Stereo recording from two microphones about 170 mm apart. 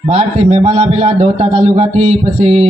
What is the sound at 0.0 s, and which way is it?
A man's voice, 35° right (ahead or behind).